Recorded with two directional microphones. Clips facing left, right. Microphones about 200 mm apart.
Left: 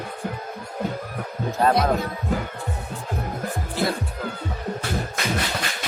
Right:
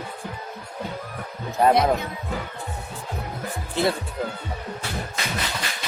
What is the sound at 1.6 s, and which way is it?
Speech, 20° right (ahead or behind).